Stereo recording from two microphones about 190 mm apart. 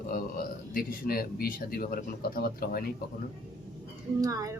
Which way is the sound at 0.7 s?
50° left (ahead or behind).